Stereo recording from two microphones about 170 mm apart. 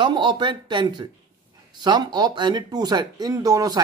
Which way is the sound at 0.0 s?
25° right (ahead or behind).